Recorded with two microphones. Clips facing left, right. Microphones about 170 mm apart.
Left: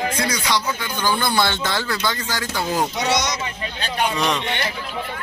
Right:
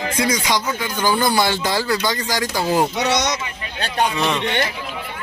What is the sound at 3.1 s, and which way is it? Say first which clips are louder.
Speech: right 2 dB; 65° right (ahead or behind).